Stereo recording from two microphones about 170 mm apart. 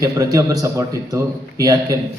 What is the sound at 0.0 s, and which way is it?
A man's voice, 20° right (ahead or behind).